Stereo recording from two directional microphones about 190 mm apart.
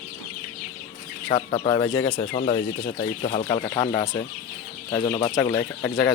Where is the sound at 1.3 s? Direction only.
25° left (ahead or behind).